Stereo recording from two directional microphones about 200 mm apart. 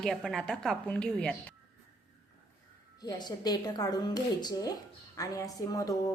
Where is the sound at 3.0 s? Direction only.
20° left (ahead or behind).